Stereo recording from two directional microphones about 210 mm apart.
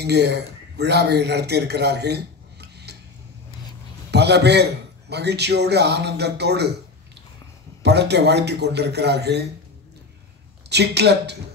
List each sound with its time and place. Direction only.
0.0 s a man's voice: 50° right (ahead or behind)
4.1 s a man's voice: 55° right (ahead or behind)
7.8 s a man's voice: 50° right (ahead or behind)
10.7 s a man's voice: 50° right (ahead or behind)